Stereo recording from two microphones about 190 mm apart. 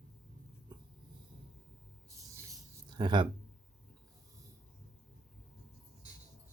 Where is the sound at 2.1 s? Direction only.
15° right (ahead or behind).